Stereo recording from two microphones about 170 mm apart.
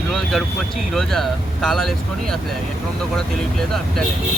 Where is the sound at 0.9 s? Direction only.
Centre (ahead or behind).